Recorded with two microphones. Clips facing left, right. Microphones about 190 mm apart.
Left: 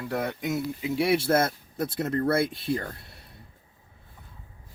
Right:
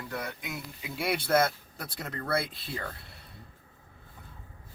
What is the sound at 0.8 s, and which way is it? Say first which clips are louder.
Speech: left 6 dB; 25° left (ahead or behind).